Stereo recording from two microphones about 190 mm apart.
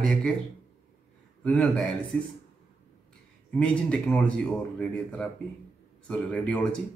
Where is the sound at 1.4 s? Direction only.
5° left (ahead or behind).